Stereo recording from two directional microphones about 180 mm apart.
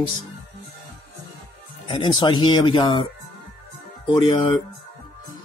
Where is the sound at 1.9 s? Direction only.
25° left (ahead or behind).